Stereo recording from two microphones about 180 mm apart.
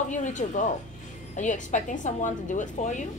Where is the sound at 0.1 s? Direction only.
45° left (ahead or behind).